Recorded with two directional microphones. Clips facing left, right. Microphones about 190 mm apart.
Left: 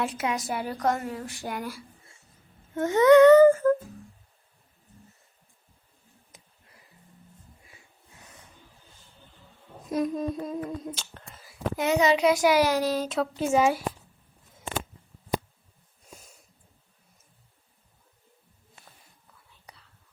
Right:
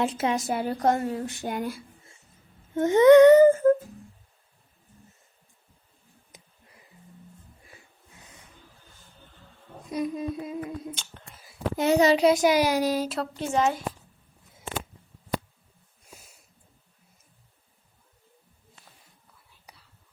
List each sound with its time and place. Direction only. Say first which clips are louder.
0.0 s a woman's voice: right 3 dB; 25° right (ahead or behind)
9.9 s humming: left 2 dB; 5° right (ahead or behind)
11.8 s a woman's voice: right 3 dB; 35° right (ahead or behind); by 13.1 s 15° right (ahead or behind)
13.1 s speech: left 4 dB; 5° left (ahead or behind)
19.6 s whispering: left 1 dB; 5° right (ahead or behind)